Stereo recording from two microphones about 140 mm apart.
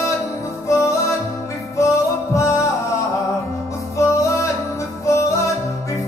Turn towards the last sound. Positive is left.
turn(degrees=20)  # may be behind; listen again after turning